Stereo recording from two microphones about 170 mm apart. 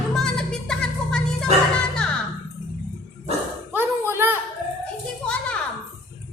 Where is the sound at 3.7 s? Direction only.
15° right (ahead or behind).